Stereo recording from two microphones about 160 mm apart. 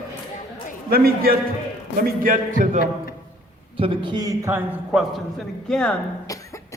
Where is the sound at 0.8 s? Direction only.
70° right (ahead or behind).